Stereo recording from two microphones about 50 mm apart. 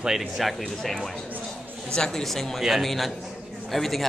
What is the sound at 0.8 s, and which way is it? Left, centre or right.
Speech, centre.